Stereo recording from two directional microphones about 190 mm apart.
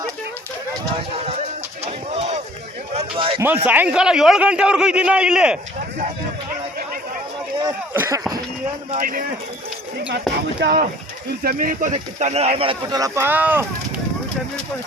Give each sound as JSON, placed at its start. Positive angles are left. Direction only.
{"t": 1.8, "sound": "a sound", "side_deg": -35}
{"t": 3.7, "sound": "a man's voice", "side_deg": -5}
{"t": 7.6, "sound": "speech", "side_deg": -15}
{"t": 8.9, "sound": "speech", "side_deg": -45}
{"t": 10.6, "sound": "speech", "side_deg": -55}